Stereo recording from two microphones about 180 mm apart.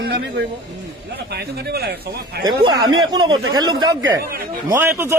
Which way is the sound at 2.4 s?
25° right (ahead or behind).